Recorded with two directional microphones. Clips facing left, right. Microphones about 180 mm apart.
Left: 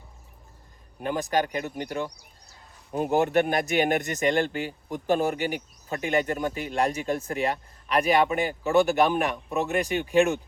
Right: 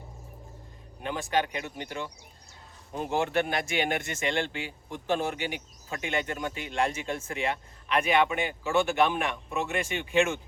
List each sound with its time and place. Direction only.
1.0 s speech: 45° left (ahead or behind)